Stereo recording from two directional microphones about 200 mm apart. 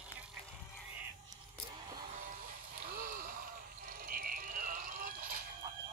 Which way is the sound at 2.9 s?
45° right (ahead or behind).